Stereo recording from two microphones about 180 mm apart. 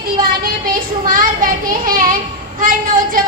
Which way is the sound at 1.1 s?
50° right (ahead or behind).